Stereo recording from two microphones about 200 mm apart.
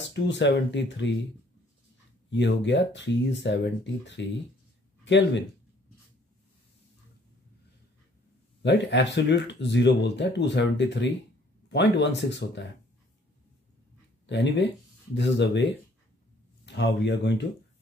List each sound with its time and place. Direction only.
0.0 s speech: 60° left (ahead or behind)
2.3 s speech: 60° left (ahead or behind)
8.6 s speech: 60° left (ahead or behind)
14.2 s speech: 60° left (ahead or behind)